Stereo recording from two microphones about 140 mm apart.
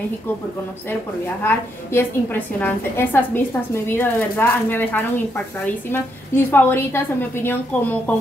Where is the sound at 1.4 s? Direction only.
15° left (ahead or behind).